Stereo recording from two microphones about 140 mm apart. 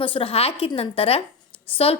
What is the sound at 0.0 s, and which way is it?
A woman's voice, 40° left (ahead or behind).